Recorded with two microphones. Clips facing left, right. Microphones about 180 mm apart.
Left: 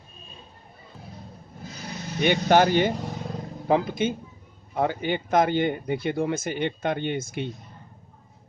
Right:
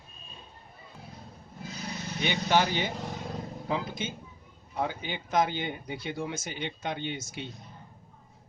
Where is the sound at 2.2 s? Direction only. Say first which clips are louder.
Left 7 dB; 55° left (ahead or behind).